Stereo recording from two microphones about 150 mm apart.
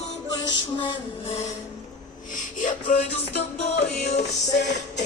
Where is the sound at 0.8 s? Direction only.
30° left (ahead or behind).